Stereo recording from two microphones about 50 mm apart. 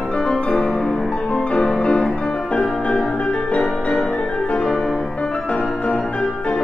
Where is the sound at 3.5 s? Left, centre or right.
Centre.